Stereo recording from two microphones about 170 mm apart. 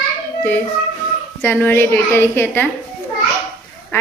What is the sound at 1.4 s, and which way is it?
A woman's voice, 10° left (ahead or behind).